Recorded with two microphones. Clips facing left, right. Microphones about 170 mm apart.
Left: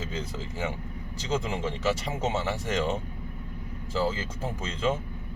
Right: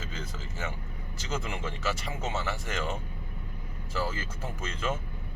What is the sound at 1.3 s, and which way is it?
Speech, 25° left (ahead or behind).